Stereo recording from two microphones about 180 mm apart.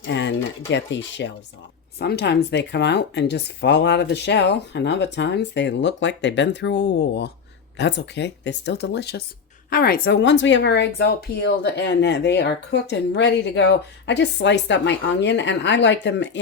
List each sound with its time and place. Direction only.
0.0 s speech: 85° left
2.0 s speech: 65° left (ahead or behind)
9.6 s speech: 55° left (ahead or behind); by 16.4 s 75° left (ahead or behind)